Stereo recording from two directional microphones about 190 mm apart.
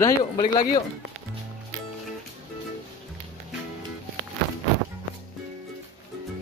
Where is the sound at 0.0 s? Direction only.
25° left (ahead or behind).